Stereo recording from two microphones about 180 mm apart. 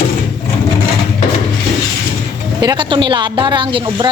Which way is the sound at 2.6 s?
25° right (ahead or behind).